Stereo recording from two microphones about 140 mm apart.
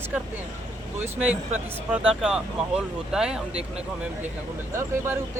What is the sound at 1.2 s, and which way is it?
Speech, 10° right (ahead or behind).